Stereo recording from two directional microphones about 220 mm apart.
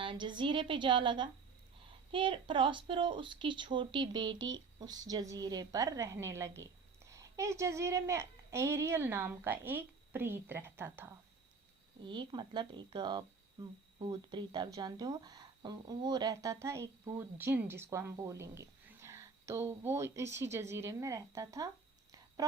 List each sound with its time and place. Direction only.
0.0 s a woman's voice: 20° right (ahead or behind)